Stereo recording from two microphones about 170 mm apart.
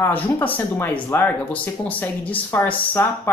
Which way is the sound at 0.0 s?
10° left (ahead or behind).